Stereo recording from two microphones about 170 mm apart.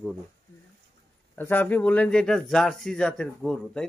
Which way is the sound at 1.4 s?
10° left (ahead or behind).